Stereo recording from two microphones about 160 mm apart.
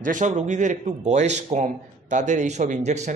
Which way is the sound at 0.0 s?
50° right (ahead or behind).